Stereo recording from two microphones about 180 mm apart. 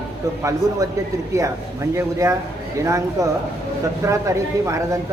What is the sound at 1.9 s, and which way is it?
A woman's voice, 15° right (ahead or behind).